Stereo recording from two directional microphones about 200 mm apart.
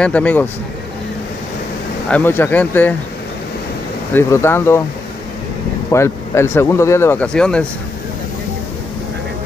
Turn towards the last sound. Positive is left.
turn(degrees=5)  # may be behind; listen again after turning